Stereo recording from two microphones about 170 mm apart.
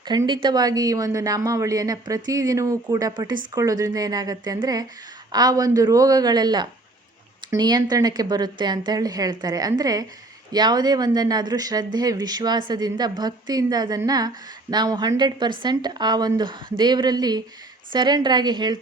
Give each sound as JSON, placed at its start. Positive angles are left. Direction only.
{"t": 0.0, "sound": "speech", "side_deg": -25}